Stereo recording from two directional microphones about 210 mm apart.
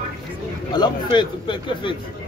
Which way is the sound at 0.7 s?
20° left (ahead or behind).